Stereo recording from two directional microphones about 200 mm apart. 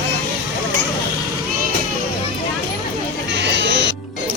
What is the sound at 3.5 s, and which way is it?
Music, 60° right (ahead or behind).